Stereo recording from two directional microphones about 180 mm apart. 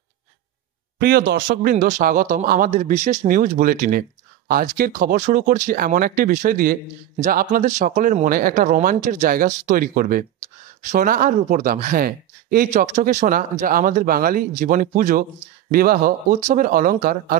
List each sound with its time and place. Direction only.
0.9 s speech: 60° right (ahead or behind)
12.7 s speech: 40° right (ahead or behind)